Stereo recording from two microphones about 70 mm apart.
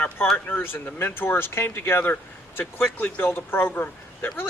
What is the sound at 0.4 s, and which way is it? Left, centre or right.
Speech, left.